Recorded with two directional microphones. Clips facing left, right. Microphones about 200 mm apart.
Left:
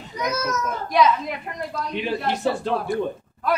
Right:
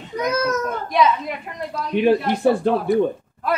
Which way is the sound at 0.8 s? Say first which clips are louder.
Left 1 dB; centre (ahead or behind).